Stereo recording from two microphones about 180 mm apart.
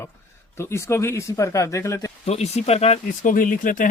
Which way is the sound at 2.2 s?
35° left (ahead or behind).